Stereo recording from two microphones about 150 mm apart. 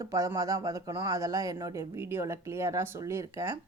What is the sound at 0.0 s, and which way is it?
Speech, 20° right (ahead or behind).